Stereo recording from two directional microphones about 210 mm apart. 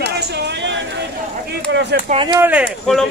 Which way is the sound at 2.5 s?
Centre (ahead or behind).